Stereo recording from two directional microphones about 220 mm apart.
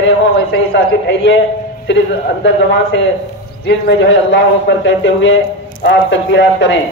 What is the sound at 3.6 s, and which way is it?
A man's voice, 50° left (ahead or behind).